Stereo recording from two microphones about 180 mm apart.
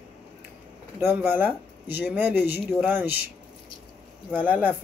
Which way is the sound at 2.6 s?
Centre (ahead or behind).